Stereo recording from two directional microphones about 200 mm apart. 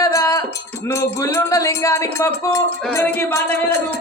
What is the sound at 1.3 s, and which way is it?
Music, 15° left (ahead or behind).